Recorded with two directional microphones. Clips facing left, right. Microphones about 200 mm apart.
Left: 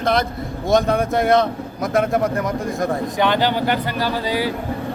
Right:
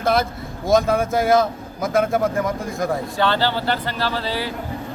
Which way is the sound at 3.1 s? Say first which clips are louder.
Left 3 dB; 15° left (ahead or behind).